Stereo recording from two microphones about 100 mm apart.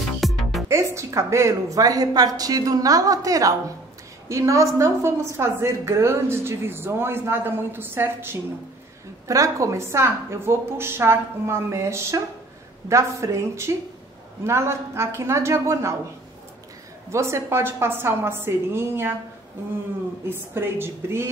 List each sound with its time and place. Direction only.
0.2 s music: centre (ahead or behind)
0.7 s a woman's voice: 30° right (ahead or behind)
17.1 s a woman's voice: 25° right (ahead or behind)
20.2 s a woman's voice: 25° right (ahead or behind)